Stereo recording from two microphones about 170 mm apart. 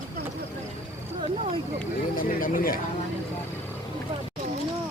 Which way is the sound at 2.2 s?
55° left (ahead or behind).